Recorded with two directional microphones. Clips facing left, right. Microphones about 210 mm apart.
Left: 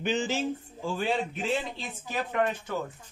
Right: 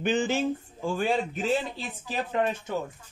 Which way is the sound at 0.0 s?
55° right (ahead or behind).